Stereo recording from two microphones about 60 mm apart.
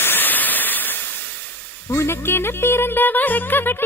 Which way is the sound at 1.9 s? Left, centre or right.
Left.